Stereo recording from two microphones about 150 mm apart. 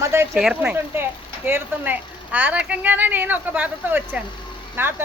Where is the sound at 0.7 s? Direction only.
15° right (ahead or behind).